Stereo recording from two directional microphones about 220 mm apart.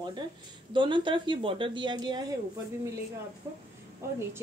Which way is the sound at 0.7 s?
20° right (ahead or behind).